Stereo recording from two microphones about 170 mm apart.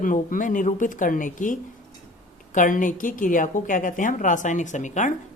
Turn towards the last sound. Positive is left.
turn(degrees=45)  # may be behind; listen again after turning